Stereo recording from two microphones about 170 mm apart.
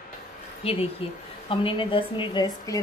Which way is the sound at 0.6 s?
35° left (ahead or behind).